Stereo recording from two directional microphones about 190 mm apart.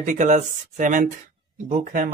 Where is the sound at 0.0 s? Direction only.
40° right (ahead or behind).